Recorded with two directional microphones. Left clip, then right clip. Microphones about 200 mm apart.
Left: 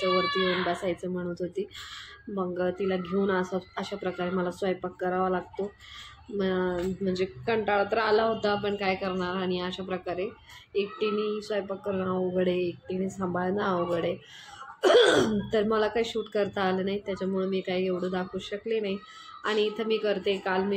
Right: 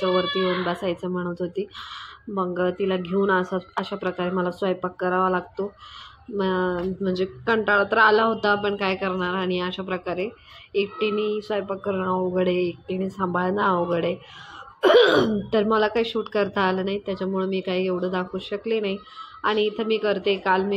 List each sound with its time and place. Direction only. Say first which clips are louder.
0.0 s speech: right 3 dB; 20° right (ahead or behind)